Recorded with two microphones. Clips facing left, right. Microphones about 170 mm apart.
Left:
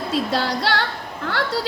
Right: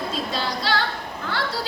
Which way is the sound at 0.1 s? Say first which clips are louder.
Left 5 dB; 75° left (ahead or behind).